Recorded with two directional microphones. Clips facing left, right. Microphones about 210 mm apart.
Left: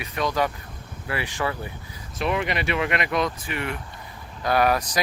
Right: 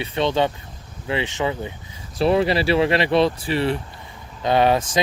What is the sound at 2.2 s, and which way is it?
Speech, 35° right (ahead or behind).